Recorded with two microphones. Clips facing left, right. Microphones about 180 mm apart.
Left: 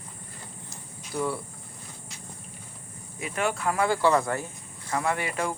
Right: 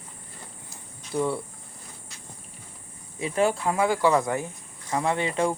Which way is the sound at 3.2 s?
30° right (ahead or behind).